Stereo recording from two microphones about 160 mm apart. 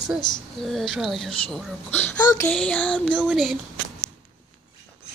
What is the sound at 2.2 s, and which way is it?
Child singing, 20° left (ahead or behind).